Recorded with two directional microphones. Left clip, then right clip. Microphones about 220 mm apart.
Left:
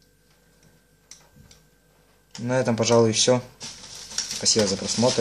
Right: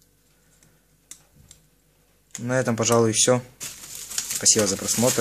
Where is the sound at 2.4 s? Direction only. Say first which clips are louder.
Left 1 dB; 15° right (ahead or behind).